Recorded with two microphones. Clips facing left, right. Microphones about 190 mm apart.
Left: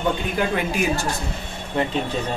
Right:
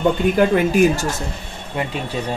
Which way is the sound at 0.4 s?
45° right (ahead or behind).